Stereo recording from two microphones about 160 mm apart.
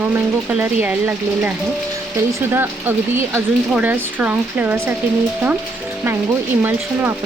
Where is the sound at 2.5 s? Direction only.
15° right (ahead or behind).